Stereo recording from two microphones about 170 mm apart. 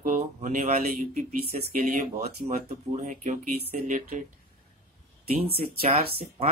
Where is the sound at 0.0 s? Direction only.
50° right (ahead or behind).